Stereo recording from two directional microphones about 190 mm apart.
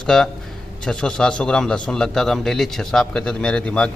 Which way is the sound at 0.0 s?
5° left (ahead or behind).